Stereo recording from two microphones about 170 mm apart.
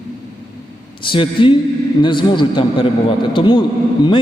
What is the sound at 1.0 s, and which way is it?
A man's voice, 30° left (ahead or behind).